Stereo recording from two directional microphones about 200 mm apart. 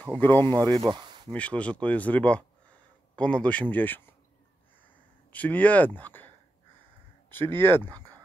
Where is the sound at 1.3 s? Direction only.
5° left (ahead or behind).